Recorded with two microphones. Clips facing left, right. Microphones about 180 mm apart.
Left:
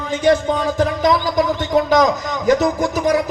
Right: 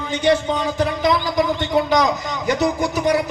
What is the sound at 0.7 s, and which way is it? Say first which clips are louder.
A man's voice: left 2 dB; 40° left (ahead or behind).